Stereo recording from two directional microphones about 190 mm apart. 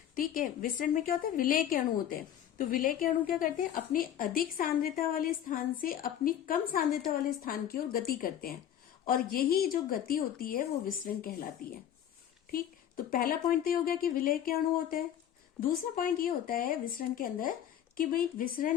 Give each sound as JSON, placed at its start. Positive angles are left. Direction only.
{"t": 0.2, "sound": "a woman's voice", "side_deg": 45}
{"t": 13.1, "sound": "a woman's voice", "side_deg": 50}